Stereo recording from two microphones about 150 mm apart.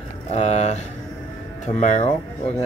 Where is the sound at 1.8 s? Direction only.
50° left (ahead or behind).